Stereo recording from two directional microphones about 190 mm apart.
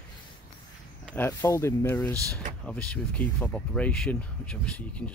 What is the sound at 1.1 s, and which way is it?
Speech, 10° left (ahead or behind).